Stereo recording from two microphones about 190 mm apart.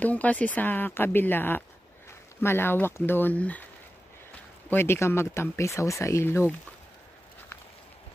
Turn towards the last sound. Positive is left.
turn(degrees=15)  # may be behind; listen again after turning